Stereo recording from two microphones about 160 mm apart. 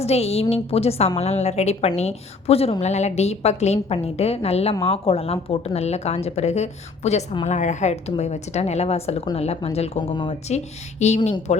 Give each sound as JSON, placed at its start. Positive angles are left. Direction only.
{"t": 0.0, "sound": "a woman's voice", "side_deg": 40}
{"t": 11.0, "sound": "a woman's voice", "side_deg": 45}